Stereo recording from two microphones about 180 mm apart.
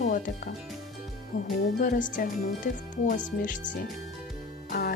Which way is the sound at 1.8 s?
45° left (ahead or behind).